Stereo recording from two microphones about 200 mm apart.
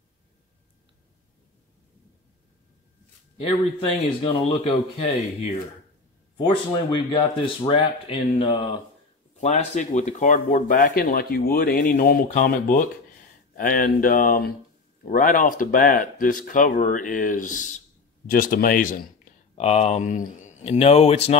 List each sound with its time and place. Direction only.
4.2 s speech: 25° left (ahead or behind)
9.4 s speech: 35° left (ahead or behind)
19.5 s speech: 30° left (ahead or behind)